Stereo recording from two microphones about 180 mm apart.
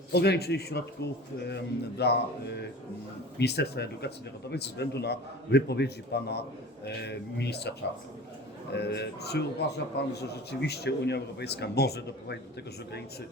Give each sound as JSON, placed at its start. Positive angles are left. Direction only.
{"t": 0.1, "sound": "a man's voice", "side_deg": 65}
{"t": 8.7, "sound": "a man's voice", "side_deg": 70}